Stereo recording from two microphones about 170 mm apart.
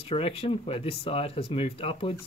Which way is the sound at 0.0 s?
35° left (ahead or behind).